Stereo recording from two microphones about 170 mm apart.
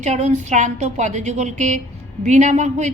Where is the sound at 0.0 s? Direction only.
45° right (ahead or behind).